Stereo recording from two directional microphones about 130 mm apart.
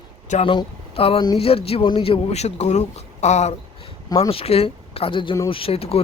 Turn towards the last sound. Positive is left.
turn(degrees=50)  # may be behind; listen again after turning